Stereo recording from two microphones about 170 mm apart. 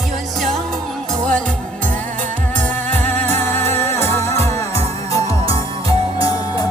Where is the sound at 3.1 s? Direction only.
10° left (ahead or behind).